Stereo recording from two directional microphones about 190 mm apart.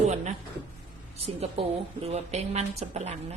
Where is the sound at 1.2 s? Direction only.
30° right (ahead or behind).